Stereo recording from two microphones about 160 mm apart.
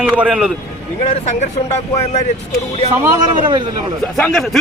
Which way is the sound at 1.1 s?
45° left (ahead or behind).